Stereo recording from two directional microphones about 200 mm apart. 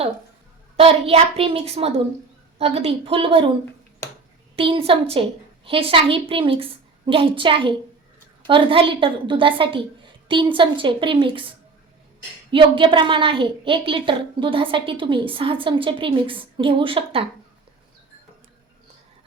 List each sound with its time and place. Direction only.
0.8 s a woman's voice: 30° right (ahead or behind)
4.5 s a woman's voice: 25° right (ahead or behind)
12.5 s a woman's voice: 25° right (ahead or behind)